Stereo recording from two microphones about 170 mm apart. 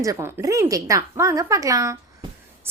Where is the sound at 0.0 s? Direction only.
15° right (ahead or behind).